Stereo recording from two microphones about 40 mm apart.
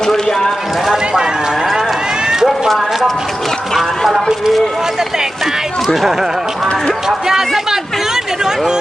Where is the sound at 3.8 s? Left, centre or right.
Centre.